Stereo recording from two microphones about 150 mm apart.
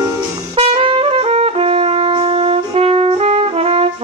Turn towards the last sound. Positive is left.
turn(degrees=-40)  # may be behind; listen again after turning